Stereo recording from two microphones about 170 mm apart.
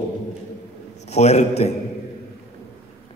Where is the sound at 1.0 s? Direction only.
40° left (ahead or behind).